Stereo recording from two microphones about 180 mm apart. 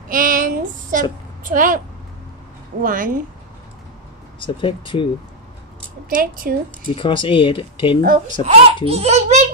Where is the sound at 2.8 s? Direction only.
50° right (ahead or behind).